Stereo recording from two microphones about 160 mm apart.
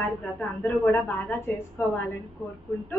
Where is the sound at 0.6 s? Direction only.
10° left (ahead or behind).